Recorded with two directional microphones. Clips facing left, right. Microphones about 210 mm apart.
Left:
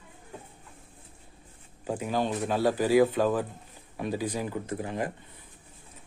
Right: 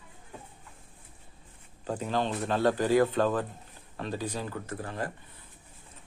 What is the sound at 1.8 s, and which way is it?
Speech, 10° left (ahead or behind).